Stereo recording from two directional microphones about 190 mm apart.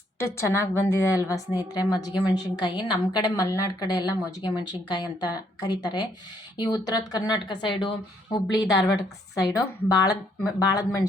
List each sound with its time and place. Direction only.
0.2 s a woman's voice: 15° left (ahead or behind)